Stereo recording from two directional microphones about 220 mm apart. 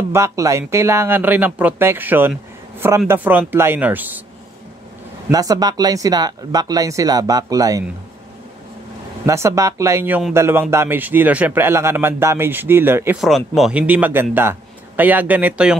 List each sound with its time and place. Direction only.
0.1 s a man's voice: 15° right (ahead or behind)
5.3 s a man's voice: 15° right (ahead or behind)
9.2 s a man's voice: 15° right (ahead or behind)